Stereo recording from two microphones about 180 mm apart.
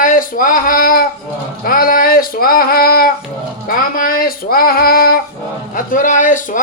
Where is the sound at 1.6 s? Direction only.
55° left (ahead or behind).